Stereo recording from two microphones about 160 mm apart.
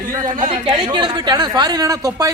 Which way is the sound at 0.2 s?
55° right (ahead or behind).